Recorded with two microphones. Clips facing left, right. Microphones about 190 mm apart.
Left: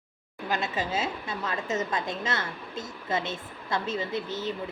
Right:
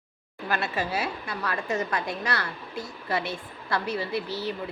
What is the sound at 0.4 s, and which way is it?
A woman's voice, 20° left (ahead or behind).